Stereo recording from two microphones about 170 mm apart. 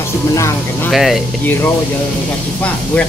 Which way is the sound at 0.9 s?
Centre (ahead or behind).